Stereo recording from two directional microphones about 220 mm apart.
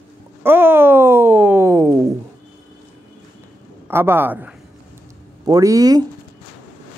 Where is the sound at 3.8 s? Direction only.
10° right (ahead or behind).